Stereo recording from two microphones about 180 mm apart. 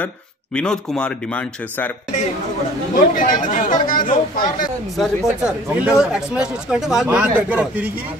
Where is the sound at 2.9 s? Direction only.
50° left (ahead or behind).